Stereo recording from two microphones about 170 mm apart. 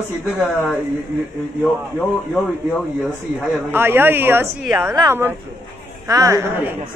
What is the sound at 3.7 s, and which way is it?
A woman's voice, 10° right (ahead or behind).